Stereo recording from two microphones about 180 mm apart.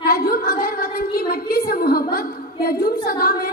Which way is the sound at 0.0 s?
55° left (ahead or behind).